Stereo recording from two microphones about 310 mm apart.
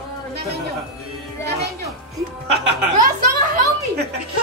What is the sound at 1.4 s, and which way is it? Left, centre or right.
Music, right.